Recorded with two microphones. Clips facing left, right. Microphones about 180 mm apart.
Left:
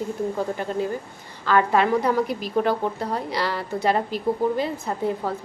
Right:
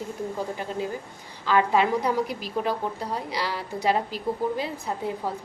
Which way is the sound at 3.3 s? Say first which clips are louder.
Left 4 dB; 10° right (ahead or behind).